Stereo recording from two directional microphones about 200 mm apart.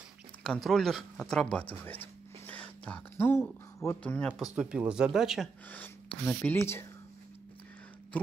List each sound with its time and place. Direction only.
0.4 s speech: centre (ahead or behind)
4.3 s speech: 5° right (ahead or behind)
5.7 s speech: 10° left (ahead or behind)